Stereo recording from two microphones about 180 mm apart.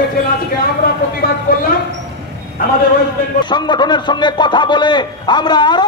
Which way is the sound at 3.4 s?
25° left (ahead or behind).